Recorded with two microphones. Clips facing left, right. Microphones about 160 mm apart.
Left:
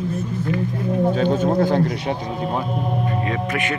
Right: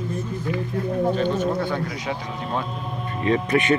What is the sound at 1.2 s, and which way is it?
Speech, 45° left (ahead or behind).